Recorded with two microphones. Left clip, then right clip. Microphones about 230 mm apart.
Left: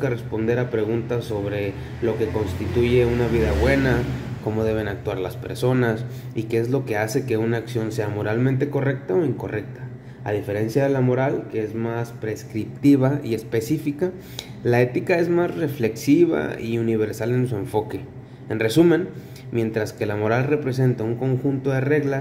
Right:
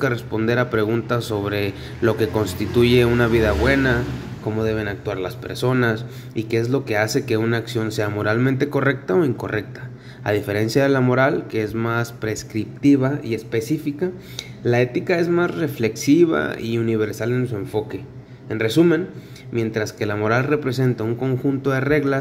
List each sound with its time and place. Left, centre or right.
0.0 s speech: centre
3.6 s speech: centre
12.8 s speech: centre